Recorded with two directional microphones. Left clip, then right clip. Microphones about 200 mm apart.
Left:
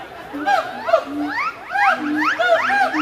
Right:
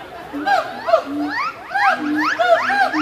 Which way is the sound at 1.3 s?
15° right (ahead or behind).